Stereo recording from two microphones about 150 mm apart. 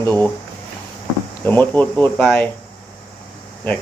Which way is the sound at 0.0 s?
10° left (ahead or behind).